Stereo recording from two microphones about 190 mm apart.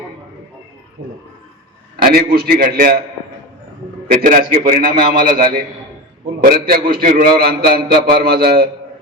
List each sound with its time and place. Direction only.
2.0 s a man's voice: 50° right (ahead or behind)
4.2 s a man's voice: 50° right (ahead or behind)
7.3 s a sound: 55° right (ahead or behind)
8.4 s a man's voice: 50° right (ahead or behind)